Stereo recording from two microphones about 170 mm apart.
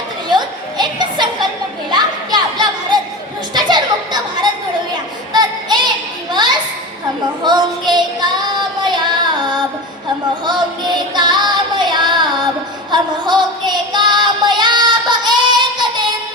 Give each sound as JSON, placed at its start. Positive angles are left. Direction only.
{"t": 0.3, "sound": "a sound", "side_deg": -25}
{"t": 3.5, "sound": "chatter", "side_deg": -25}
{"t": 5.3, "sound": "child singing", "side_deg": -25}
{"t": 6.3, "sound": "children playing", "side_deg": -25}
{"t": 7.4, "sound": "child singing", "side_deg": -25}
{"t": 10.4, "sound": "female singing", "side_deg": -25}